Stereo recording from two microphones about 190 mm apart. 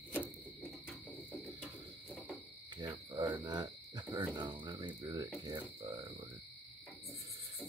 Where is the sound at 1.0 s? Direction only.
10° left (ahead or behind).